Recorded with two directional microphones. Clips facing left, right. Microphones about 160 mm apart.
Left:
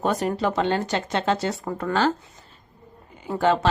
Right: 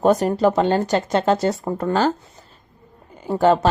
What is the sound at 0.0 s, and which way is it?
Speech, 40° right (ahead or behind).